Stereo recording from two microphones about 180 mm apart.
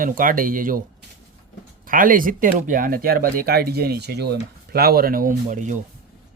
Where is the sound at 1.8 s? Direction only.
50° right (ahead or behind).